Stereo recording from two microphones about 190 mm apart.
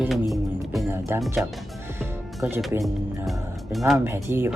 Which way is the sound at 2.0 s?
10° right (ahead or behind).